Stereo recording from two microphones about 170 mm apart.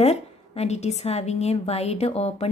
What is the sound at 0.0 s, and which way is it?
A woman's voice, 40° left (ahead or behind).